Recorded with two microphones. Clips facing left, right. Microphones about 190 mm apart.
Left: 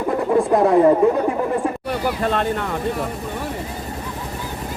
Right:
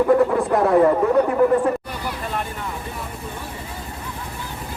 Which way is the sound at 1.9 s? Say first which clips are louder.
Left 7 dB; 60° left (ahead or behind).